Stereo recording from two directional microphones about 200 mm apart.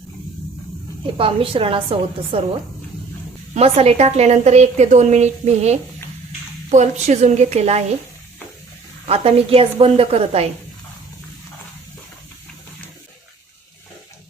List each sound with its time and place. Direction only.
1.1 s a woman's voice: 25° right (ahead or behind)
3.5 s a woman's voice: 30° right (ahead or behind)
9.0 s a woman's voice: 30° right (ahead or behind)